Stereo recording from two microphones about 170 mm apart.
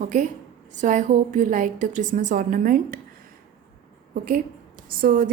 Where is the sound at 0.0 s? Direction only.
50° right (ahead or behind).